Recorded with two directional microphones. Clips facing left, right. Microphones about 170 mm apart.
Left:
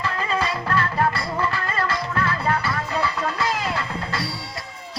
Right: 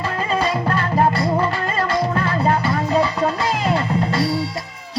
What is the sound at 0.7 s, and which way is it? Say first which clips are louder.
Music: right 3 dB; 25° right (ahead or behind).